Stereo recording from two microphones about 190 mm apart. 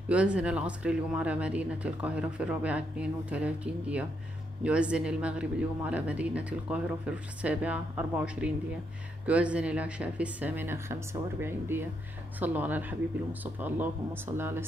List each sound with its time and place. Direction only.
0.1 s speech: 5° right (ahead or behind)